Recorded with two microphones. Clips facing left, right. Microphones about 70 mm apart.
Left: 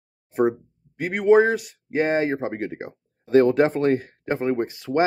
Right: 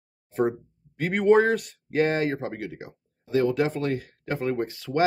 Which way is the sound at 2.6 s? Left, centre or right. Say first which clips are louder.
Left 6 dB; left.